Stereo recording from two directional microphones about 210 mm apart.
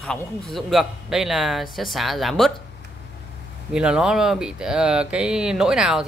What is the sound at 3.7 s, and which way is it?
Speech, 5° right (ahead or behind).